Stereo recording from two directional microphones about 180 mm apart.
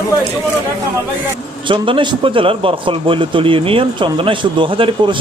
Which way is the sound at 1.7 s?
30° right (ahead or behind).